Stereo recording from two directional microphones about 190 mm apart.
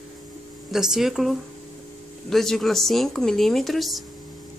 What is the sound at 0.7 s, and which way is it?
Speech, centre (ahead or behind).